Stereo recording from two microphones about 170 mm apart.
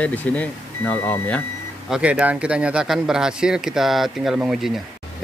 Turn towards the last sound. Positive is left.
turn(degrees=0)  # may be behind; listen again after turning